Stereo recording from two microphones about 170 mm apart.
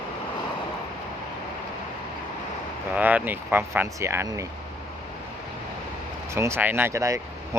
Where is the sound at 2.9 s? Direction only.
10° right (ahead or behind).